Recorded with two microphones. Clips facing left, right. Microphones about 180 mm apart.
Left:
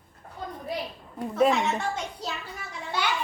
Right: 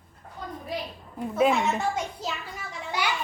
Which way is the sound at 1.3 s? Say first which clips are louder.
Even; 5° right (ahead or behind).